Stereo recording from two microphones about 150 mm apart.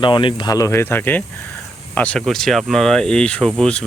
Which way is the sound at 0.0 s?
35° left (ahead or behind).